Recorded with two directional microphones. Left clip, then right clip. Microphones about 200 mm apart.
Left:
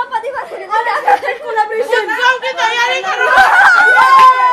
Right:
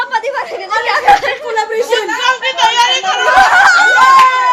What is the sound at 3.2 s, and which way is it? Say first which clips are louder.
Snicker: even; centre (ahead or behind).